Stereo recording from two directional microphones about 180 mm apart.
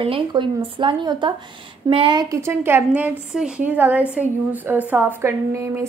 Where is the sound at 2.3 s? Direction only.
15° right (ahead or behind).